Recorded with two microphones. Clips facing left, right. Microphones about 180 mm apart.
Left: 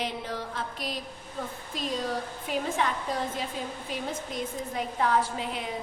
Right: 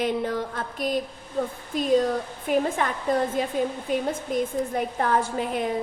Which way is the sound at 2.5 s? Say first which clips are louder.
Right 6 dB; 50° right (ahead or behind).